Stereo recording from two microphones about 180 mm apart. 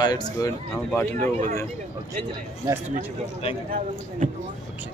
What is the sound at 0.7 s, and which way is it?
Speech, 10° left (ahead or behind).